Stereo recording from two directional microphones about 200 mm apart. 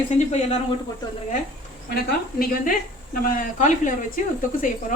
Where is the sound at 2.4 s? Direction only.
45° left (ahead or behind).